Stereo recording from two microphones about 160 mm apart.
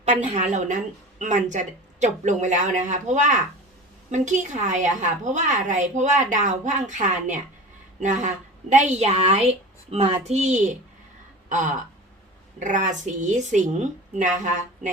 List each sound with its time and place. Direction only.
0.0 s a woman's voice: 50° right (ahead or behind)
11.4 s a sound: 50° right (ahead or behind)
12.5 s a woman's voice: 50° right (ahead or behind)